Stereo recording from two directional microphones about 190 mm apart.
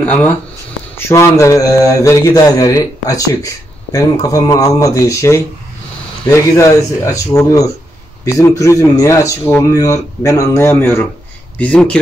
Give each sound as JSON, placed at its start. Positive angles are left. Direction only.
{"t": 0.0, "sound": "a man's voice", "side_deg": 5}